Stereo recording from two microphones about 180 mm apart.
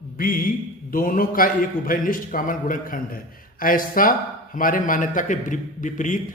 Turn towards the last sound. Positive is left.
turn(degrees=45)  # may be behind; listen again after turning